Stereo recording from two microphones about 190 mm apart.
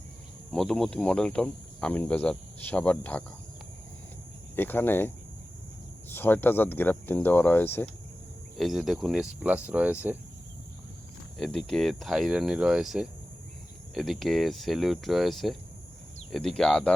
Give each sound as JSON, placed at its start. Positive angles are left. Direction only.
{"t": 0.5, "sound": "speech", "side_deg": 5}
{"t": 4.5, "sound": "speech", "side_deg": 10}
{"t": 8.5, "sound": "speech", "side_deg": 0}
{"t": 11.3, "sound": "speech", "side_deg": 0}